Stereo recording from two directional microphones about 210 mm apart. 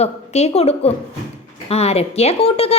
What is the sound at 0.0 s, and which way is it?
Speech, 30° left (ahead or behind).